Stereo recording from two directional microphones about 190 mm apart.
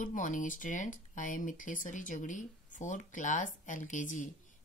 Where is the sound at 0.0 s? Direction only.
45° left (ahead or behind).